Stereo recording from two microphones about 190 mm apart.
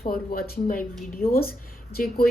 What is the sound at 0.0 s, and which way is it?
A woman's voice, 50° left (ahead or behind).